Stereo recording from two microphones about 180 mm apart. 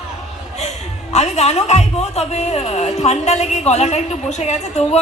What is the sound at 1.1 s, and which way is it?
Speech, 40° left (ahead or behind).